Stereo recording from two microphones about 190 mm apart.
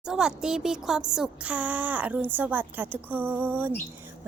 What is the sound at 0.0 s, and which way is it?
A woman's voice, 5° right (ahead or behind).